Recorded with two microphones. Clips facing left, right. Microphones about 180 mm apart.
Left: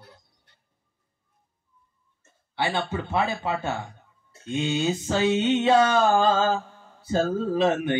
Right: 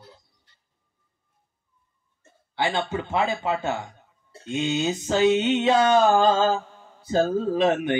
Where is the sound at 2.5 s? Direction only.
20° right (ahead or behind).